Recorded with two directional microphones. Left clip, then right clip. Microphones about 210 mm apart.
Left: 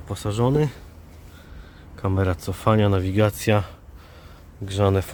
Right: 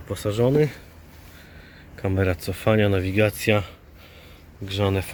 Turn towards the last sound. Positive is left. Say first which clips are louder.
# left 3 dB
turn(degrees=10)  # may be behind; listen again after turning